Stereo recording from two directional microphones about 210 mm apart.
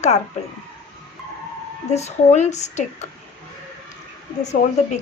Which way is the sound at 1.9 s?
30° left (ahead or behind).